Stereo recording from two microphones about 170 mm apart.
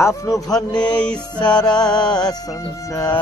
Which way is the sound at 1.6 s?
25° left (ahead or behind).